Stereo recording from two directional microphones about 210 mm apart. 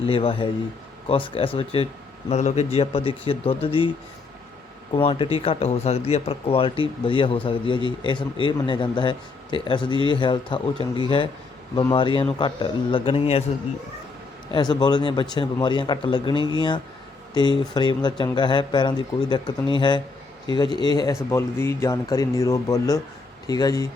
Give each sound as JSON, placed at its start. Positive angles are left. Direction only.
{"t": 0.0, "sound": "speech", "side_deg": 25}
{"t": 4.9, "sound": "speech", "side_deg": 25}
{"t": 14.5, "sound": "speech", "side_deg": 20}